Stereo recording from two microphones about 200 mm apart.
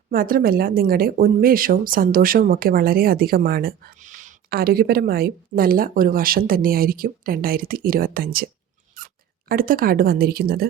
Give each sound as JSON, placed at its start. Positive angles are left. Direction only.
{"t": 0.1, "sound": "speech", "side_deg": -45}
{"t": 9.0, "sound": "a sound", "side_deg": -45}
{"t": 9.5, "sound": "speech", "side_deg": -45}